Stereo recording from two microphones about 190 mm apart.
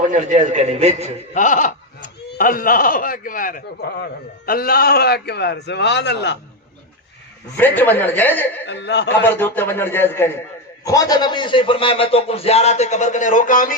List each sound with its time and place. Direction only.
0.1 s a man's voice: 40° right (ahead or behind)
1.3 s speech: 40° left (ahead or behind); by 6.4 s 65° left (ahead or behind)
7.5 s a woman's voice: 10° left (ahead or behind)
8.6 s speech: 65° left (ahead or behind)
9.2 s a woman's voice: 10° left (ahead or behind); by 13.7 s 45° left (ahead or behind)